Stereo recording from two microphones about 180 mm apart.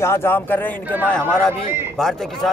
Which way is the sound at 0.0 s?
15° left (ahead or behind).